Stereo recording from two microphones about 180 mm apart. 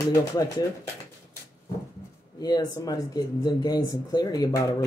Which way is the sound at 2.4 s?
20° left (ahead or behind).